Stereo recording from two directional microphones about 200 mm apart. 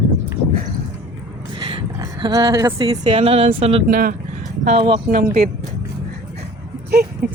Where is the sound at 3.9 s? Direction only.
45° right (ahead or behind).